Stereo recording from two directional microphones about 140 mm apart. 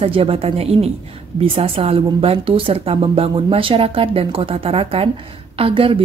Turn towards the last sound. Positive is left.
turn(degrees=-40)  # may be behind; listen again after turning